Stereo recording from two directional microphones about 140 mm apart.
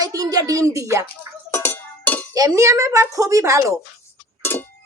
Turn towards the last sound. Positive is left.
turn(degrees=15)  # may be behind; listen again after turning